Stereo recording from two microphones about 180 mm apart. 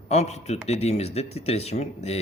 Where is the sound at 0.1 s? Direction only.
40° left (ahead or behind).